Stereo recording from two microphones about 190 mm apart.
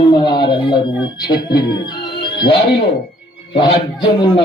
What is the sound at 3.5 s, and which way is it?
Speech, 25° left (ahead or behind).